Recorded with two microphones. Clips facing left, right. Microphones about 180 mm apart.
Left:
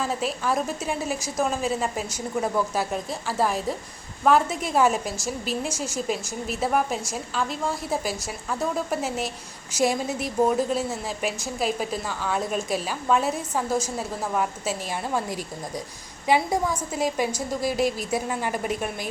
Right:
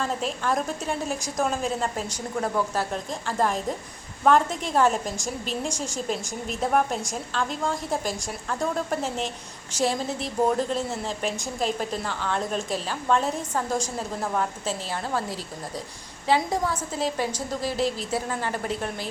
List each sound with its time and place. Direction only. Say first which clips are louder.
0.0 s a woman's voice: left 1 dB; 5° left (ahead or behind)